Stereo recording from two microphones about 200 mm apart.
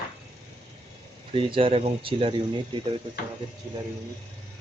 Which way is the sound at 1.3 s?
25° right (ahead or behind).